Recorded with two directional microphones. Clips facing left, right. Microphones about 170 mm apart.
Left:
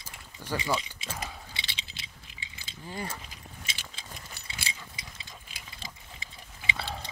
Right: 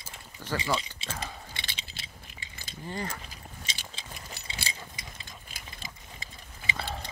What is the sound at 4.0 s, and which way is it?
Keys jangling, 30° right (ahead or behind).